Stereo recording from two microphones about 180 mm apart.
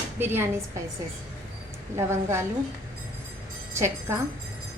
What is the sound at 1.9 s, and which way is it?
Speech, 15° right (ahead or behind).